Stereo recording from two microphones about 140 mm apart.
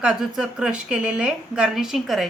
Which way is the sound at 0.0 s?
5° right (ahead or behind).